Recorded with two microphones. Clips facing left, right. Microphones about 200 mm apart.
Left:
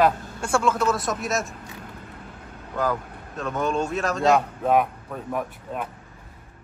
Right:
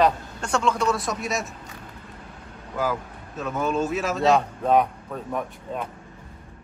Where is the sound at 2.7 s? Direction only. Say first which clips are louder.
Left 1 dB; 5° right (ahead or behind).